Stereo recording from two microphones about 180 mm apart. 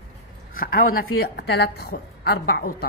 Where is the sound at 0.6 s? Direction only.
60° left (ahead or behind).